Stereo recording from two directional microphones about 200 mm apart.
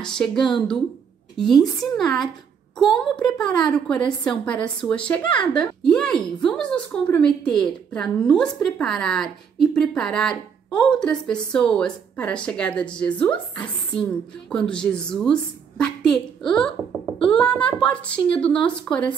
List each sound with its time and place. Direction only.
0.0 s a woman's voice: 5° left (ahead or behind)